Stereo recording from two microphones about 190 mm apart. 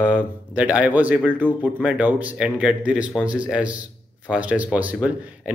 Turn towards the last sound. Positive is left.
turn(degrees=-5)  # may be behind; listen again after turning